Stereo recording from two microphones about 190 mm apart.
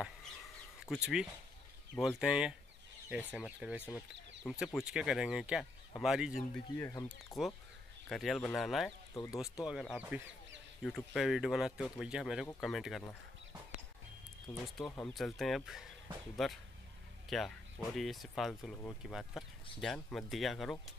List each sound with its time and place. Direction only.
0.7 s speech: centre (ahead or behind)
6.8 s speech: 15° left (ahead or behind)
7.3 s speech: centre (ahead or behind)
9.1 s speech: 15° left (ahead or behind)
9.6 s speech: centre (ahead or behind)
14.5 s speech: 5° left (ahead or behind)